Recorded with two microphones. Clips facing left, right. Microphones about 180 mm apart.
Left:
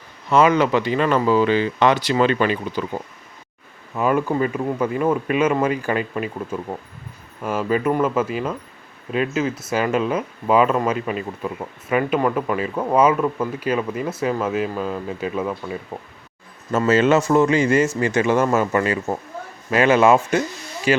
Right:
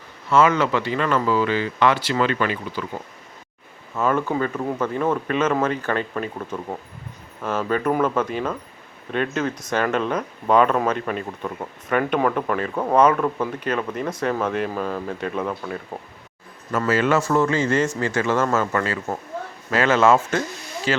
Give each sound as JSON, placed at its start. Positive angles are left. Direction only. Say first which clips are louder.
{"t": 0.3, "sound": "speech", "louder": "left 2 dB", "side_deg": 15}
{"t": 3.9, "sound": "speech", "louder": "left 2 dB", "side_deg": 15}
{"t": 16.7, "sound": "speech", "louder": "left 4 dB", "side_deg": 25}